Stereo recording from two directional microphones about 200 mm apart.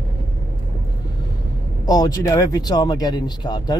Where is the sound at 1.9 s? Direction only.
20° left (ahead or behind).